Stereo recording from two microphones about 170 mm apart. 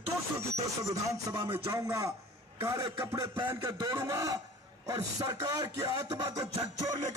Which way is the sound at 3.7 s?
25° right (ahead or behind).